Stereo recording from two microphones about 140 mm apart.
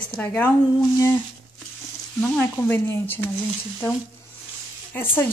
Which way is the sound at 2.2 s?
10° left (ahead or behind).